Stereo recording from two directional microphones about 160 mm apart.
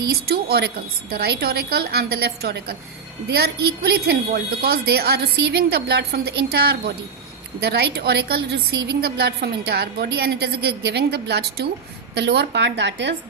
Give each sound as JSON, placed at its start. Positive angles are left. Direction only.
{"t": 0.1, "sound": "a woman's voice", "side_deg": -75}